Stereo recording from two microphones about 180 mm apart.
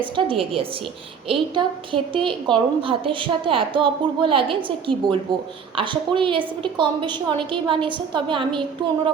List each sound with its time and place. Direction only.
0.0 s a woman's voice: 30° right (ahead or behind)